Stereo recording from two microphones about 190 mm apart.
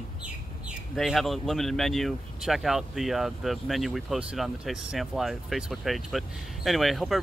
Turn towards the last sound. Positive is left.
turn(degrees=0)  # may be behind; listen again after turning